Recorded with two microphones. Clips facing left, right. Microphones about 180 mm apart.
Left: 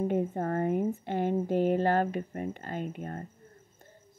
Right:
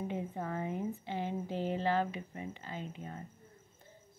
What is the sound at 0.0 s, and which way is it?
Speech, 50° left (ahead or behind).